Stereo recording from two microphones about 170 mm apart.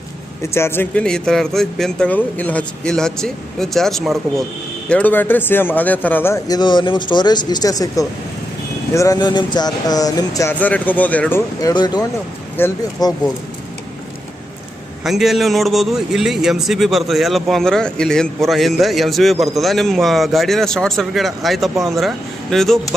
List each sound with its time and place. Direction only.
0.5 s a man's voice: 15° left (ahead or behind)
10.6 s speech: 10° left (ahead or behind)
11.7 s speech: 25° left (ahead or behind)
15.0 s a man's voice: centre (ahead or behind)